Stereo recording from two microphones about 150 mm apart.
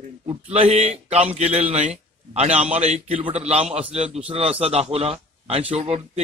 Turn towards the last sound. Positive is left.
turn(degrees=-40)  # may be behind; listen again after turning